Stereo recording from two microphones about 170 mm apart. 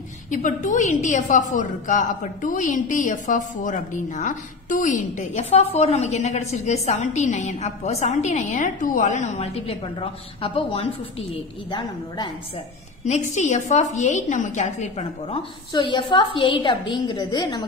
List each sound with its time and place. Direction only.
0.3 s a woman's voice: 45° left (ahead or behind); by 12.3 s 30° left (ahead or behind)
13.0 s a woman's voice: 40° left (ahead or behind); by 17.6 s 25° left (ahead or behind)